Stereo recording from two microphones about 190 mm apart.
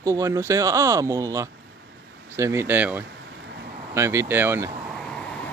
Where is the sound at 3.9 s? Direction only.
15° right (ahead or behind).